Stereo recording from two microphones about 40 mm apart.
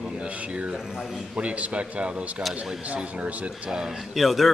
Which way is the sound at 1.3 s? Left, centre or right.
Right.